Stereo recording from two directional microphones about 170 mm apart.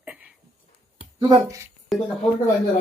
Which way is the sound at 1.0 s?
25° right (ahead or behind).